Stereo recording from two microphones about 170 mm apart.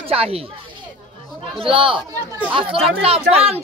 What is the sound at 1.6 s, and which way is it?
Speech, 30° right (ahead or behind).